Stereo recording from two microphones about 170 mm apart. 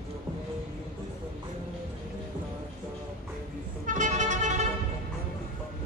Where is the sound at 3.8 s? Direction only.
45° right (ahead or behind).